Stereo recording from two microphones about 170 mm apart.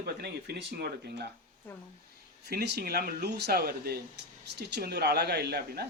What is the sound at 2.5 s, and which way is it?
Speech, 65° right (ahead or behind).